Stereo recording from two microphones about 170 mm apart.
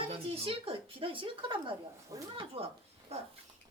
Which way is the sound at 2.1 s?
20° right (ahead or behind).